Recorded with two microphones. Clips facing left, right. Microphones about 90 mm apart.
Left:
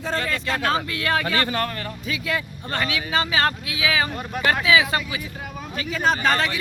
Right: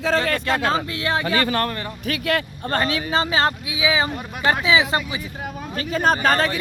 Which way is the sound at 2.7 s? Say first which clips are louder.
Right 3 dB; 35° right (ahead or behind).